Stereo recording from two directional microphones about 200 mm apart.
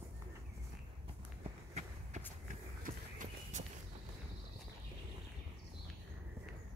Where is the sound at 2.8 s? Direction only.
40° right (ahead or behind).